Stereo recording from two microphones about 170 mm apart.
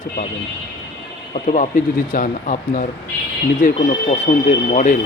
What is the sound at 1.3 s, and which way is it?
Speech, 50° left (ahead or behind).